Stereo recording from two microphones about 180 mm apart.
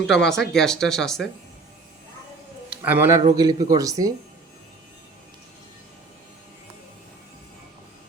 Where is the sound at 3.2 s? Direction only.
20° right (ahead or behind).